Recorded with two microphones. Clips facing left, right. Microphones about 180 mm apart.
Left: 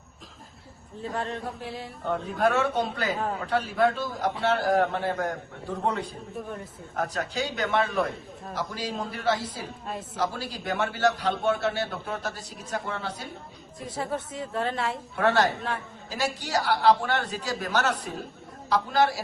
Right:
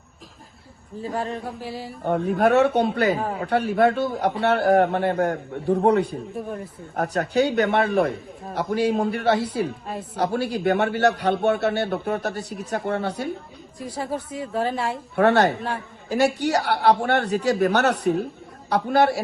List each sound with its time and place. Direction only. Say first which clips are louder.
1.0 s a woman's voice: right 3 dB; centre (ahead or behind)
2.0 s a man's voice: right 6 dB; 60° right (ahead or behind)
9.8 s a woman's voice: right 3 dB; centre (ahead or behind)
10.2 s a man's voice: right 8 dB; 65° right (ahead or behind)
13.7 s a woman's voice: right 3 dB; centre (ahead or behind)
15.1 s a man's voice: right 6 dB; 60° right (ahead or behind)